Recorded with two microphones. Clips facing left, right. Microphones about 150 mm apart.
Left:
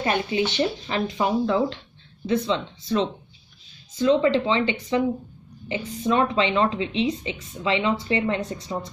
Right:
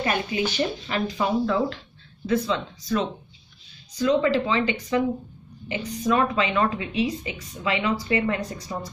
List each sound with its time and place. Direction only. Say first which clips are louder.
0.0 s speech: left 2 dB; 25° left (ahead or behind)